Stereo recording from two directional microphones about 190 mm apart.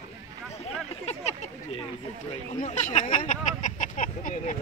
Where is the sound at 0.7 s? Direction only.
35° left (ahead or behind).